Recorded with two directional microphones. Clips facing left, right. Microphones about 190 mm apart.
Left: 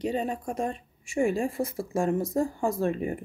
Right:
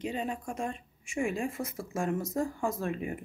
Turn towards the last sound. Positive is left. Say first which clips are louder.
# left 6 dB
turn(degrees=35)  # may be behind; listen again after turning